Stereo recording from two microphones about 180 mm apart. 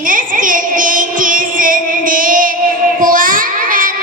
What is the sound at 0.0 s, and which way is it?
Music, 50° right (ahead or behind).